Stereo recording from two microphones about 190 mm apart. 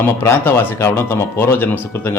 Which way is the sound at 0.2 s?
10° left (ahead or behind).